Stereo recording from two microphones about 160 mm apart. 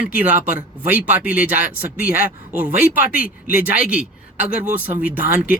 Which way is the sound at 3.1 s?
65° left (ahead or behind).